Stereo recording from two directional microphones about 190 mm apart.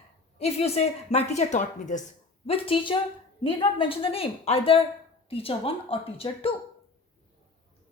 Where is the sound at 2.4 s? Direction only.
30° left (ahead or behind).